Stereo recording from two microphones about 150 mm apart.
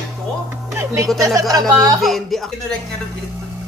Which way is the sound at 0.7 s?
20° right (ahead or behind).